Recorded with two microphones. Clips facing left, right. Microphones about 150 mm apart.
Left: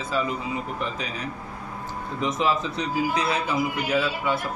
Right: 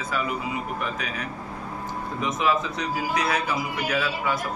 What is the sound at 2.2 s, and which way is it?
A man's voice, 30° left (ahead or behind).